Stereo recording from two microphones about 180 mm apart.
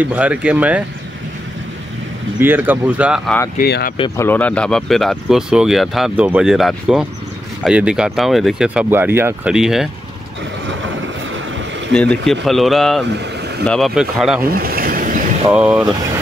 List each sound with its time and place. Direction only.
0.0 s speech: 10° right (ahead or behind)
2.4 s speech: 10° right (ahead or behind)
3.5 s speech: 60° left (ahead or behind)
4.2 s speech: 10° left (ahead or behind)
10.7 s vehicle: 90° right
11.9 s speech: 5° left (ahead or behind)
14.5 s vehicle: 55° right (ahead or behind)
15.5 s speech: 5° right (ahead or behind)